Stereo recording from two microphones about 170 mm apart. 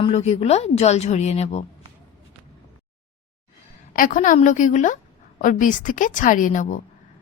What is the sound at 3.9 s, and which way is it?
A woman's voice, 55° left (ahead or behind).